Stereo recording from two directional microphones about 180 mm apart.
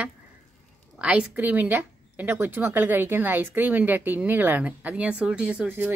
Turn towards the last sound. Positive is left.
turn(degrees=-10)  # may be behind; listen again after turning